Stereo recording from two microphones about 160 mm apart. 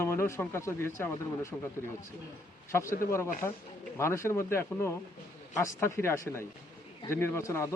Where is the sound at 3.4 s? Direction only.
15° left (ahead or behind).